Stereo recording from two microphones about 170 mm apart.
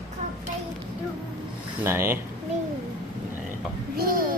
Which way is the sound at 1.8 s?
15° right (ahead or behind).